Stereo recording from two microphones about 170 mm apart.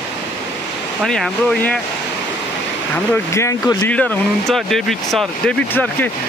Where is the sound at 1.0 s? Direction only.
5° left (ahead or behind).